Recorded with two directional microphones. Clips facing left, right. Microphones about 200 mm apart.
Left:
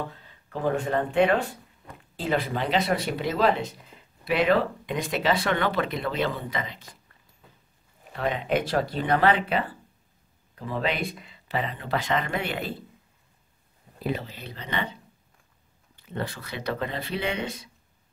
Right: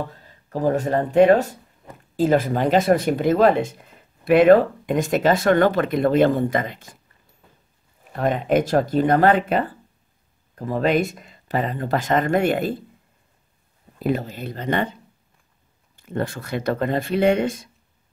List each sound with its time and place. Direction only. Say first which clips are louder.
0.5 s speech: right 5 dB; 40° right (ahead or behind)
8.1 s speech: right 6 dB; 45° right (ahead or behind)
14.0 s speech: right 7 dB; 45° right (ahead or behind)
16.0 s speech: right 7 dB; 50° right (ahead or behind)